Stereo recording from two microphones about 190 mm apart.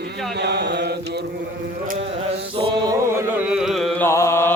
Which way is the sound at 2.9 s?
5° right (ahead or behind).